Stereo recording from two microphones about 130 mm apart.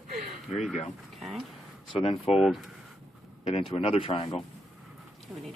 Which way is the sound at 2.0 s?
50° left (ahead or behind).